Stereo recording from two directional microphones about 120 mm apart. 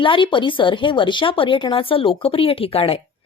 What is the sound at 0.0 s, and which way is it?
Speech, 45° left (ahead or behind).